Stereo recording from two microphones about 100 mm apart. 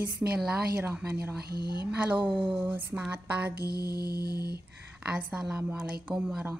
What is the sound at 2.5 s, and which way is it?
Speech, 20° right (ahead or behind).